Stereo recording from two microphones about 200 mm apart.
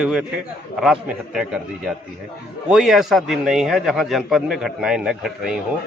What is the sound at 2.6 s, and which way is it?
A man's voice, centre (ahead or behind).